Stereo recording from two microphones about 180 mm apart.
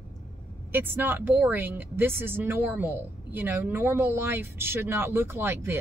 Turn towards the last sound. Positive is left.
turn(degrees=-15)  # may be behind; listen again after turning